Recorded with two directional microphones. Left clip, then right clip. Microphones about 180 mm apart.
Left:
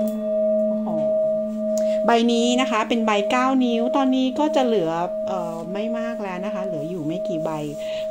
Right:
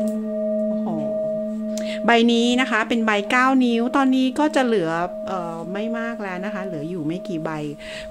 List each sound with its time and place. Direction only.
1.8 s a woman's voice: 25° right (ahead or behind)